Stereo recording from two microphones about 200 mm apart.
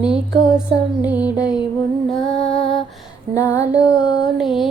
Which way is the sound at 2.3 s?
30° left (ahead or behind).